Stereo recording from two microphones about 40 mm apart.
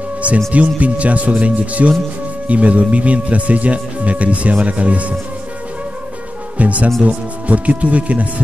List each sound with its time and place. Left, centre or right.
0.5 s speech: right
6.6 s speech: right